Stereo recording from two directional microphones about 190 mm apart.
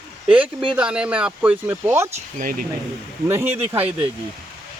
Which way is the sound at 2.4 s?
50° right (ahead or behind).